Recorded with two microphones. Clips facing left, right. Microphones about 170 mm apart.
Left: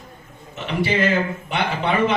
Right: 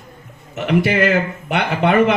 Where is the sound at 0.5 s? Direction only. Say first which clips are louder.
Right 5 dB; 65° right (ahead or behind).